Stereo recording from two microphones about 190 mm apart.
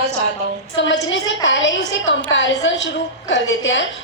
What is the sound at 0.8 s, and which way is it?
A woman's voice, 75° left (ahead or behind).